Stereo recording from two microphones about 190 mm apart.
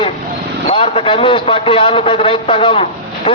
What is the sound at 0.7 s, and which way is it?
A man's voice, 30° left (ahead or behind).